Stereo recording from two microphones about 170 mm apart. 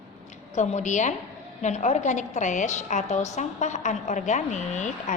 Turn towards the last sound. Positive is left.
turn(degrees=45)  # may be behind; listen again after turning